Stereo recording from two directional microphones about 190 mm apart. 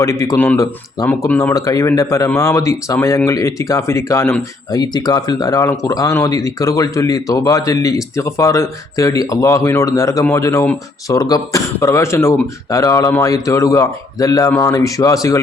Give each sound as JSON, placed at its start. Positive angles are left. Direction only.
{"t": 0.0, "sound": "speech", "side_deg": 15}